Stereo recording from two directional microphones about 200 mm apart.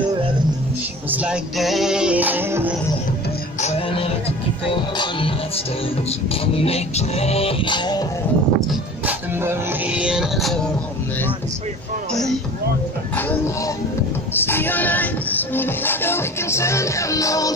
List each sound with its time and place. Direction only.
1.1 s music: 5° right (ahead or behind)
3.6 s a sound: 30° left (ahead or behind)
4.6 s music: 25° left (ahead or behind)
6.4 s music: 30° left (ahead or behind)
8.5 s music: 10° right (ahead or behind)
14.3 s music: 10° left (ahead or behind)